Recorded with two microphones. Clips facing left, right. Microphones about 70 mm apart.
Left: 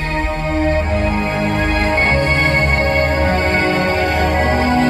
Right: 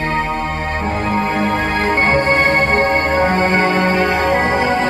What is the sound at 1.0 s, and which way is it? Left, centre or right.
Music, right.